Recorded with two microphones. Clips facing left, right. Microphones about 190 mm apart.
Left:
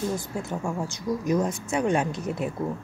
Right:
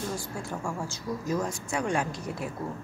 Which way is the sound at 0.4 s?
20° left (ahead or behind).